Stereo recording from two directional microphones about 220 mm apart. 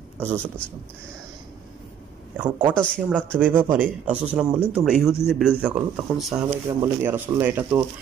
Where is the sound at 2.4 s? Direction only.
20° right (ahead or behind).